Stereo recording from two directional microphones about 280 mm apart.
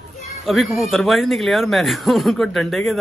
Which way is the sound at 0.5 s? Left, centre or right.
Centre.